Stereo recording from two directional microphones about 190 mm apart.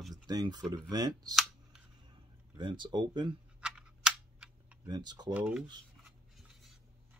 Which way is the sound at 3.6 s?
5° right (ahead or behind).